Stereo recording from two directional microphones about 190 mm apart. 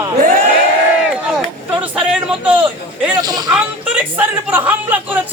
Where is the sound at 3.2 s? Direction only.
20° right (ahead or behind).